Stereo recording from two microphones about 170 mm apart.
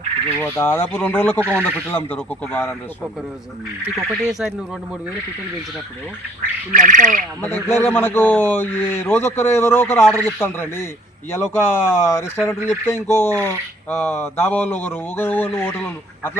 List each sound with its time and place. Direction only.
0.4 s speech: 15° left (ahead or behind)
3.8 s speech: centre (ahead or behind)
6.7 s speech: 50° right (ahead or behind)
7.4 s speech: 15° left (ahead or behind)